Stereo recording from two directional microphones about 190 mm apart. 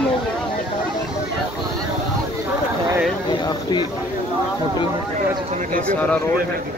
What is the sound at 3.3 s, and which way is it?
Speech, 20° left (ahead or behind).